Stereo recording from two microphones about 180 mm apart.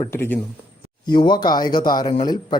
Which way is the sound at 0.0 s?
15° left (ahead or behind).